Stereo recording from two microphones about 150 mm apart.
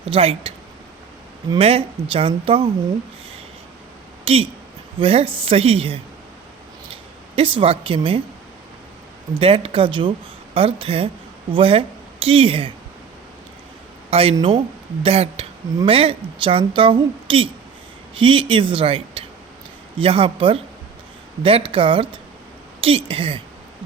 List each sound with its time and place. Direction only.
0.0 s speech: 40° right (ahead or behind)
1.5 s a woman's voice: 40° right (ahead or behind)
4.3 s a woman's voice: 40° right (ahead or behind)
9.4 s a woman's voice: 40° right (ahead or behind)
14.1 s a woman's voice: 40° right (ahead or behind)